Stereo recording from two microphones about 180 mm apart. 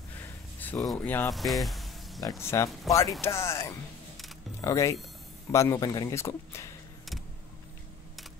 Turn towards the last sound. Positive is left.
turn(degrees=15)  # may be behind; listen again after turning